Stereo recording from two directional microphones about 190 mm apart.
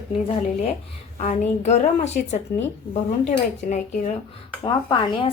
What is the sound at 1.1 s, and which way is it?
A woman's voice, 40° left (ahead or behind).